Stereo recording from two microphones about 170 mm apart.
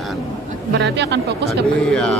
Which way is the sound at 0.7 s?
80° right.